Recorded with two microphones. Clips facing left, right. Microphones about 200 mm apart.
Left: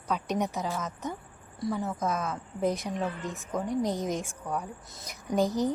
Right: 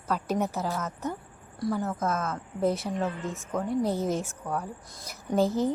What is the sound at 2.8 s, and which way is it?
Speech, 5° right (ahead or behind).